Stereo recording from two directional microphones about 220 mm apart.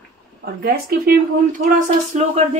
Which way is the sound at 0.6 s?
40° right (ahead or behind).